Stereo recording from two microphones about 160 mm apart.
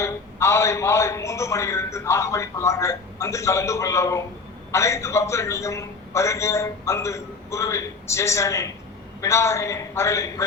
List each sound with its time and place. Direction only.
0.0 s a man's voice: 15° left (ahead or behind)